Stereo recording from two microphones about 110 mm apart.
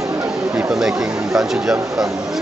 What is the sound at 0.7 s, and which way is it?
Speech, 5° right (ahead or behind).